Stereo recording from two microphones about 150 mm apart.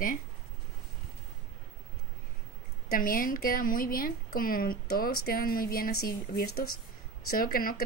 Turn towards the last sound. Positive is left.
turn(degrees=75)  # may be behind; listen again after turning